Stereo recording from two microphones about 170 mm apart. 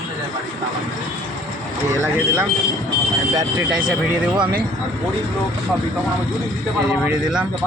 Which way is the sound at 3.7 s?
5° right (ahead or behind).